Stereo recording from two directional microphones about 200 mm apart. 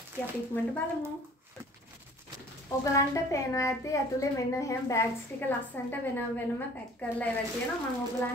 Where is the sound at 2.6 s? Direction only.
15° left (ahead or behind).